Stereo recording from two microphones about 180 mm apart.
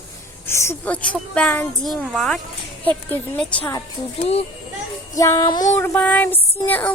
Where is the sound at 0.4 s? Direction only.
15° left (ahead or behind).